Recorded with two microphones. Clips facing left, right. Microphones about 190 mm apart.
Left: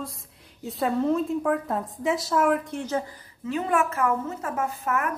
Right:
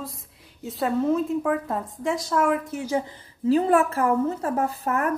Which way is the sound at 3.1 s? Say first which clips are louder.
Right 10 dB; 35° right (ahead or behind).